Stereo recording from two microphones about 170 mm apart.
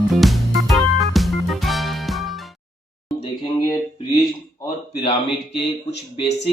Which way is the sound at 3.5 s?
25° left (ahead or behind).